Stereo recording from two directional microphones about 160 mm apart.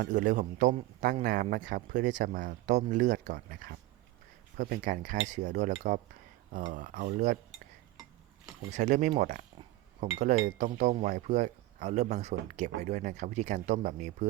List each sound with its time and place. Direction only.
0.1 s speech: 55° right (ahead or behind)
6.7 s cutlery: 55° right (ahead or behind)
8.7 s speech: 50° right (ahead or behind)
10.2 s speech: 45° right (ahead or behind)